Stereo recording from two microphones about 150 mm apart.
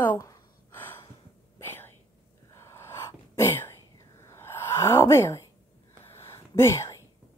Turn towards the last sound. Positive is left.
turn(degrees=20)  # may be behind; listen again after turning